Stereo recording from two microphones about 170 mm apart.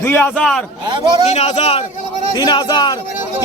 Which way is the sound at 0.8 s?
25° right (ahead or behind).